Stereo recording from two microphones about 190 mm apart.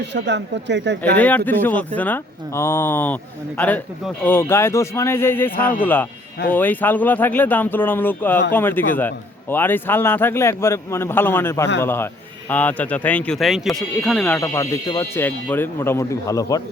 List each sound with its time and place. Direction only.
0.0 s speech: 65° right (ahead or behind)
1.5 s a man's voice: 10° left (ahead or behind)
14.3 s a man's voice: 15° left (ahead or behind)